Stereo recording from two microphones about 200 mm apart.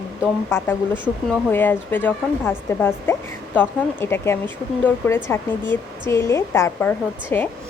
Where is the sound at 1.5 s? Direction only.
10° left (ahead or behind).